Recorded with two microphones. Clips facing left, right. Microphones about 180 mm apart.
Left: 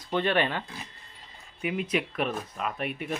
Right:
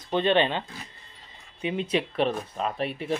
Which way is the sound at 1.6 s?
30° right (ahead or behind).